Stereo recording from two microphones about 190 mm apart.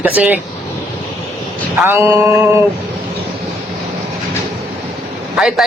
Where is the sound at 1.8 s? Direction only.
15° right (ahead or behind).